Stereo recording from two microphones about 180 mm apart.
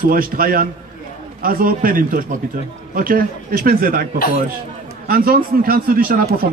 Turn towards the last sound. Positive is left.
turn(degrees=-55)  # may be behind; listen again after turning